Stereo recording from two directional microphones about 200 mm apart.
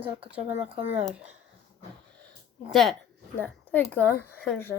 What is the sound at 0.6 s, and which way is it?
Speech, 30° right (ahead or behind).